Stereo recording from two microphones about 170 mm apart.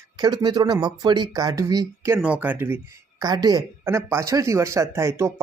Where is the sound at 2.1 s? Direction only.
10° right (ahead or behind).